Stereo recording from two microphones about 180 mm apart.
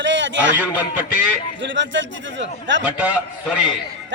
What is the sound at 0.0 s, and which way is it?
Speech, 90° right.